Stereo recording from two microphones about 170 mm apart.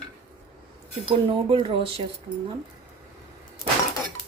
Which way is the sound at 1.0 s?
30° right (ahead or behind).